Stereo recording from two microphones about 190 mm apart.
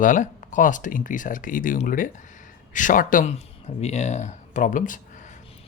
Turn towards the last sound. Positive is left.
turn(degrees=45)  # may be behind; listen again after turning